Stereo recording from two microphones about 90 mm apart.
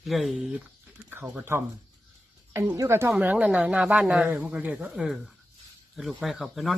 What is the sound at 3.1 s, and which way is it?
Speech, 15° right (ahead or behind).